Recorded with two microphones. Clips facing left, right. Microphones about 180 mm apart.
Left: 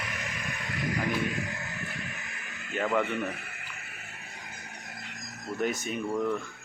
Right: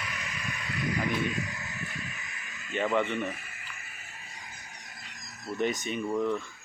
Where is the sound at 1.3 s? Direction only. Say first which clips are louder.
Even; 60° left (ahead or behind).